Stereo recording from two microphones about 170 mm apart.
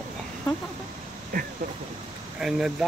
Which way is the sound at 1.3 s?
60° right (ahead or behind).